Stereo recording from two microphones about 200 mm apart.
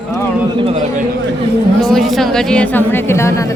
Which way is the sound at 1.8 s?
Centre (ahead or behind).